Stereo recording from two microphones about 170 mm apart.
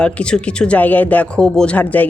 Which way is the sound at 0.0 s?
5° left (ahead or behind).